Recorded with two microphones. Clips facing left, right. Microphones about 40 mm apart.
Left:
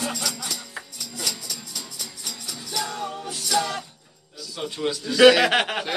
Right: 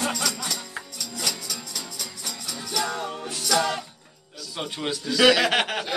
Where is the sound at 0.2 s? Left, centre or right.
Right.